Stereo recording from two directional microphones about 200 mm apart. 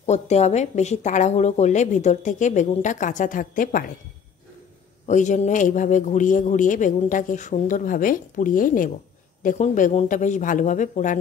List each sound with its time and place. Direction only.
0.0 s a man's voice: 35° left (ahead or behind)
5.0 s a man's voice: 35° left (ahead or behind)